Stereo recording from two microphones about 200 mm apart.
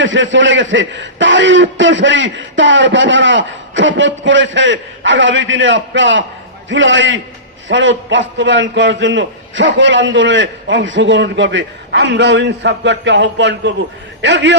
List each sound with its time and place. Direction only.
0.0 s a man's voice: 70° right (ahead or behind)